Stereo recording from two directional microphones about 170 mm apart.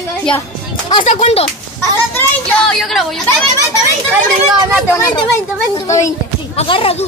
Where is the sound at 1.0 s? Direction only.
45° left (ahead or behind).